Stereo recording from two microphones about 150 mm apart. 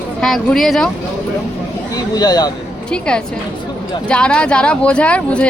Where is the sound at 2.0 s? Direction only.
25° left (ahead or behind).